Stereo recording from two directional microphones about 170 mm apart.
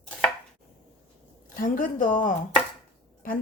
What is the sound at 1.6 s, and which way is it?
A woman's voice, 50° left (ahead or behind).